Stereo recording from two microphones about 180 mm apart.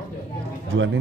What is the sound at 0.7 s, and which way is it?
Speech, 90° right.